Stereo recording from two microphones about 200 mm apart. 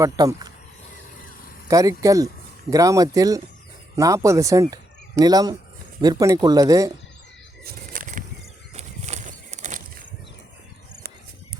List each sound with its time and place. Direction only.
0.0 s speech: 20° right (ahead or behind)
1.6 s speech: 15° right (ahead or behind)
7.6 s bird flight: 45° right (ahead or behind)
8.7 s a sound: 35° right (ahead or behind)